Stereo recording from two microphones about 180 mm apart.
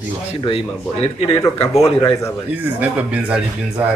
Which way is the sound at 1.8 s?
20° left (ahead or behind).